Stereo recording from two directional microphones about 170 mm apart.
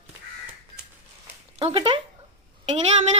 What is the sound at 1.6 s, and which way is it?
Speech, 35° right (ahead or behind).